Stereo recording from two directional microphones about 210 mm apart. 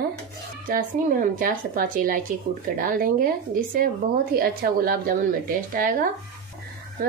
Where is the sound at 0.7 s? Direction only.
40° right (ahead or behind).